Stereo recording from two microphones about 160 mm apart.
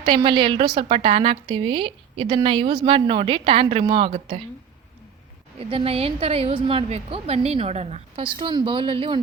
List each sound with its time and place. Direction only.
0.0 s a woman's voice: 30° right (ahead or behind)
5.5 s a woman's voice: 35° right (ahead or behind)